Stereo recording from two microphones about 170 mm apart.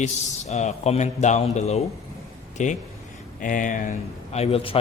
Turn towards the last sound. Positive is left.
turn(degrees=35)  # may be behind; listen again after turning